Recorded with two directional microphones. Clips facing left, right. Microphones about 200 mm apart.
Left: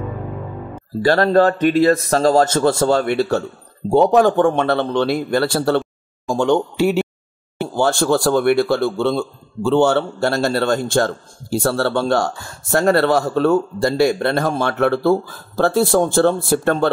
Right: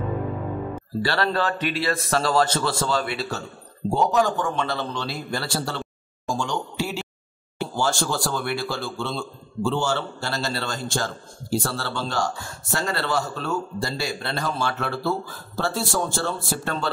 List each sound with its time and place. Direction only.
1.0 s a man's voice: 45° left (ahead or behind)